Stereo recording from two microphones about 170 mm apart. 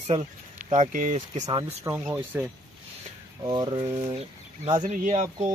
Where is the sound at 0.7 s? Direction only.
50° right (ahead or behind).